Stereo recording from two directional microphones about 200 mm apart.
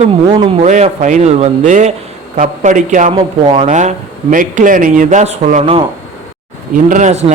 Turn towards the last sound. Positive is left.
turn(degrees=-35)  # may be behind; listen again after turning